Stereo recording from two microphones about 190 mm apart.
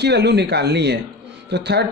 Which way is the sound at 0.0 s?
60° right (ahead or behind).